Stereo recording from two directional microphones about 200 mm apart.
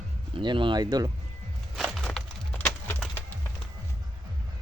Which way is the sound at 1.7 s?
Centre (ahead or behind).